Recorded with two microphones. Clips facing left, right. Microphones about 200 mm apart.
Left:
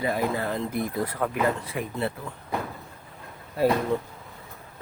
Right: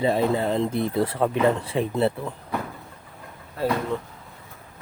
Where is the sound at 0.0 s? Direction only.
25° right (ahead or behind).